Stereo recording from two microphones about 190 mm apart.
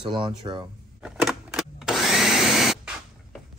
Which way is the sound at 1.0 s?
Centre (ahead or behind).